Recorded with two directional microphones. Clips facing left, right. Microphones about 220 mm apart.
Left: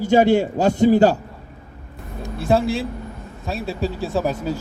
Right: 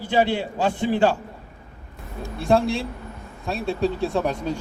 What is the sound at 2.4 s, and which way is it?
Speech, centre (ahead or behind).